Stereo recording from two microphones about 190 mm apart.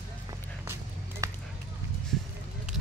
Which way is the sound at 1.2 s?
15° right (ahead or behind).